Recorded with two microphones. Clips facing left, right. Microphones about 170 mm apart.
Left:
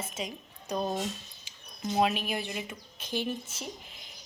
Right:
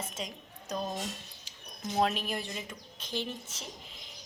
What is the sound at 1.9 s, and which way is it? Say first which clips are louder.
A woman's voice: left 2 dB; 5° left (ahead or behind).